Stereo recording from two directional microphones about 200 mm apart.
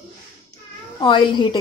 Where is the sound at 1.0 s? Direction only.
25° left (ahead or behind).